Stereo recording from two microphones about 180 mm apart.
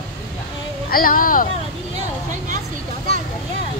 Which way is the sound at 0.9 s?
50° left (ahead or behind).